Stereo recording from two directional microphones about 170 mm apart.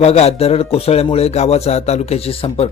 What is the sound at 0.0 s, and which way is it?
Speech, 40° left (ahead or behind).